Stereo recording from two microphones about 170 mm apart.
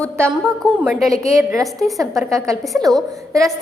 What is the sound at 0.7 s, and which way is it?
Speech, 5° right (ahead or behind).